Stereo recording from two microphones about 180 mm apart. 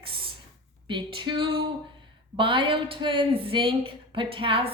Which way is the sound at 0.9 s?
25° right (ahead or behind).